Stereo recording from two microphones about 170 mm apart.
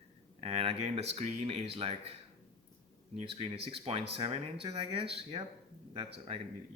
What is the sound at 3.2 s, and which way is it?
Speech, 35° right (ahead or behind).